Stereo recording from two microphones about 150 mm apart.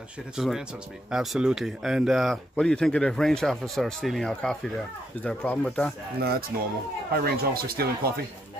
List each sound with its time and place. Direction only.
0.4 s speech: centre (ahead or behind)
6.1 s speech: 90° right